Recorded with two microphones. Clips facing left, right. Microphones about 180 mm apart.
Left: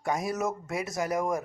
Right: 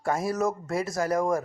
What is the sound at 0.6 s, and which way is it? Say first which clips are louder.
Speech: right 4 dB; 20° left (ahead or behind).